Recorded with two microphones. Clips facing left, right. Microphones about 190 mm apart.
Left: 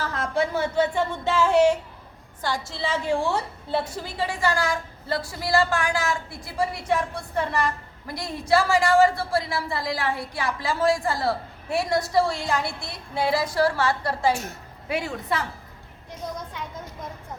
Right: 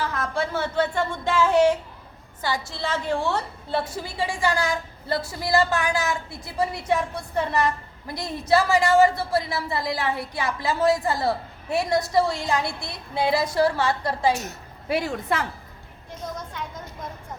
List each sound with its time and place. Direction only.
0.0 s a sound: 30° left (ahead or behind)
0.3 s a woman's voice: 15° left (ahead or behind)
4.0 s a woman's voice: 10° right (ahead or behind)
14.8 s a woman's voice: 35° right (ahead or behind)